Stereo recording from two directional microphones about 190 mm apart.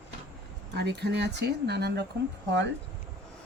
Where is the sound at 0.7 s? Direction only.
60° right (ahead or behind).